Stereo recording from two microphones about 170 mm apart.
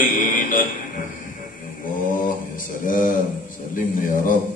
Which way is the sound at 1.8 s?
50° left (ahead or behind).